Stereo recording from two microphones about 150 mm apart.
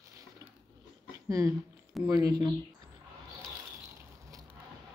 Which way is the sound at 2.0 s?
25° right (ahead or behind).